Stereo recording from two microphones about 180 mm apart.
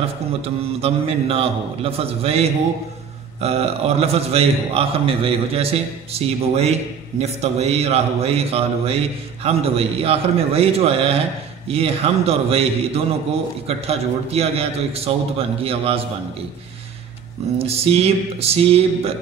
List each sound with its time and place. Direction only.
0.7 s a man's voice: 35° right (ahead or behind)
17.6 s a man's voice: 35° right (ahead or behind)